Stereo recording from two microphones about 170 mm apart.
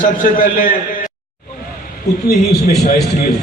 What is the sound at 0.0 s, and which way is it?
A man's voice, 55° left (ahead or behind).